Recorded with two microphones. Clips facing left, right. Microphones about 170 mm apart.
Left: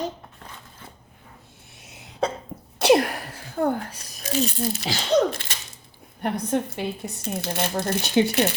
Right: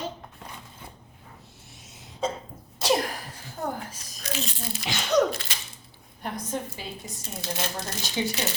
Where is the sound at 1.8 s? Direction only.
65° left (ahead or behind).